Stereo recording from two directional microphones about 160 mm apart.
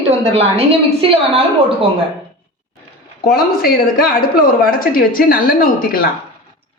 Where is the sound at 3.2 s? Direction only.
70° left (ahead or behind).